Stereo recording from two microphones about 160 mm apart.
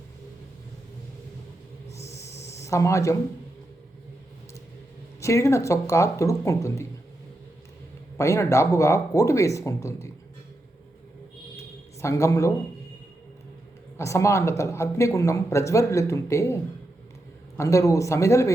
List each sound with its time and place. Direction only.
1.9 s a sound: 20° left (ahead or behind)
2.1 s snake: 45° left (ahead or behind)
2.5 s speech: 20° left (ahead or behind)
5.2 s speech: 20° left (ahead or behind)
8.2 s speech: 15° left (ahead or behind)
12.0 s a man's voice: 20° left (ahead or behind)
13.9 s speech: 20° left (ahead or behind)
17.6 s speech: 20° left (ahead or behind)